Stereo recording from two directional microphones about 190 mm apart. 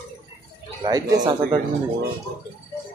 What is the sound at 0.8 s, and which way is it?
Speech, 20° right (ahead or behind).